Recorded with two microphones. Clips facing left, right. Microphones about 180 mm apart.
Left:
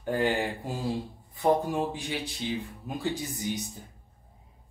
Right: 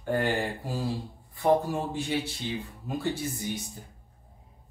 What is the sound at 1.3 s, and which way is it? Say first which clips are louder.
Speech: right 1 dB; 20° left (ahead or behind).